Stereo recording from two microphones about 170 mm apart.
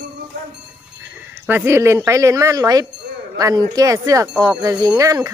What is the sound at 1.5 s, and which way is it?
Speech, 15° right (ahead or behind).